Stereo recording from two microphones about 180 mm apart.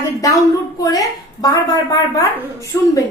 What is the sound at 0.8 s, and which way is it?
A woman's voice, 20° left (ahead or behind).